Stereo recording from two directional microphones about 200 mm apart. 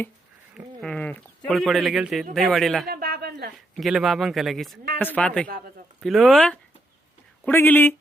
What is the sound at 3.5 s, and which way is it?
Speech, centre (ahead or behind).